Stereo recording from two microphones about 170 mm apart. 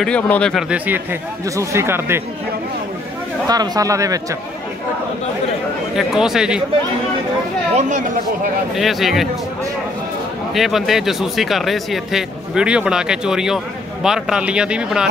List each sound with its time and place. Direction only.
0.0 s speech: 5° left (ahead or behind); by 2.2 s 15° right (ahead or behind)
3.4 s speech: 20° right (ahead or behind)
5.9 s speech: 5° right (ahead or behind)
7.7 s speech: 45° right (ahead or behind)
8.7 s speech: centre (ahead or behind)
10.5 s speech: centre (ahead or behind)